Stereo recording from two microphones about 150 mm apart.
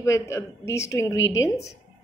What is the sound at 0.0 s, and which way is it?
A woman's voice, 20° left (ahead or behind).